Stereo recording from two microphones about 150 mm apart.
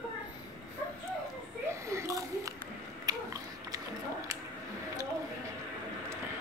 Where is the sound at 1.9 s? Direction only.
20° right (ahead or behind).